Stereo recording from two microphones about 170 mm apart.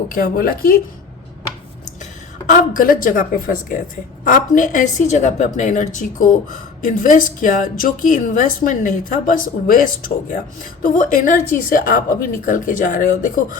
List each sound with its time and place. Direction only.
0.1 s a woman's voice: 55° left (ahead or behind)
2.5 s a woman's voice: 55° left (ahead or behind)